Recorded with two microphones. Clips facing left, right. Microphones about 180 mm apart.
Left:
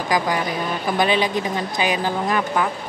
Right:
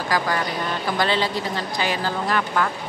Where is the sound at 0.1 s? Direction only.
15° left (ahead or behind).